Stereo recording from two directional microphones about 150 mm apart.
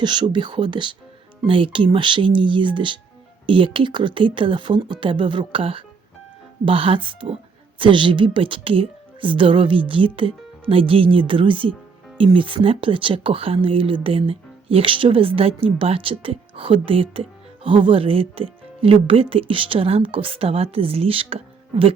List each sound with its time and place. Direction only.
0.0 s speech: 30° right (ahead or behind)